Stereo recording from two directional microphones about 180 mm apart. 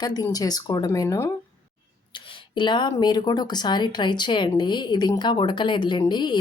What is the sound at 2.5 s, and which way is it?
Speech, 25° left (ahead or behind).